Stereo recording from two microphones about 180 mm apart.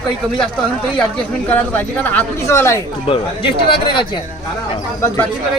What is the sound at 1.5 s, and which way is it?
A woman's voice, 10° left (ahead or behind).